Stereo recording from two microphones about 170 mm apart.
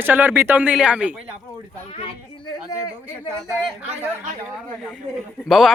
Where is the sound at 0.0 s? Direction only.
10° right (ahead or behind).